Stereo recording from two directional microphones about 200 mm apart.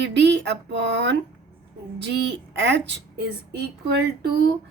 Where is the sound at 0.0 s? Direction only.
60° right (ahead or behind).